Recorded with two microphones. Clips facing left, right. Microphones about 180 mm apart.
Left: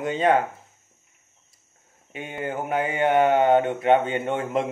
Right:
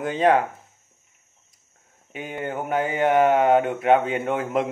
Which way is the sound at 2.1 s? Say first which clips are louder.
Right 1 dB; centre (ahead or behind).